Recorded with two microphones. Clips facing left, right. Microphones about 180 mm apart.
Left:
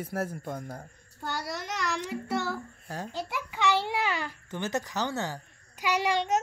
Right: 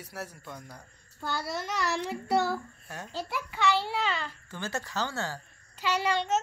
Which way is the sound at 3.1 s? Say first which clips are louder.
Right 4 dB; 15° left (ahead or behind).